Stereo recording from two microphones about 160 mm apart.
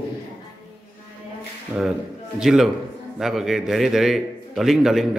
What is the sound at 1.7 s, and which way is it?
A man's voice, 10° right (ahead or behind).